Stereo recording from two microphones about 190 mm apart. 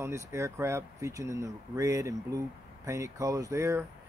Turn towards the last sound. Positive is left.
turn(degrees=-15)  # may be behind; listen again after turning